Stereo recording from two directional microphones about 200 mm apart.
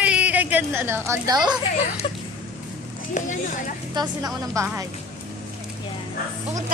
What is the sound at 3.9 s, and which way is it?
Speech, 20° right (ahead or behind).